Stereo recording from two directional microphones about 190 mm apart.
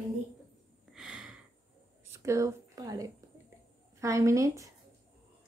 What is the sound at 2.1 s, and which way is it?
A woman's voice, 15° right (ahead or behind).